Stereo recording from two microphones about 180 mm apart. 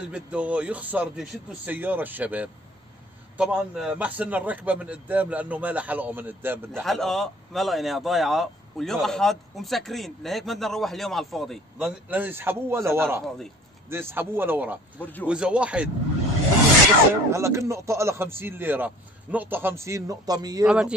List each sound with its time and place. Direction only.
0.0 s a man's voice: 5° right (ahead or behind)
6.7 s speech: centre (ahead or behind)
12.1 s a man's voice: 10° right (ahead or behind)
15.0 s speech: 10° left (ahead or behind)
15.2 s a man's voice: 5° right (ahead or behind)
17.1 s a man's voice: 15° right (ahead or behind)
20.6 s speech: 5° right (ahead or behind)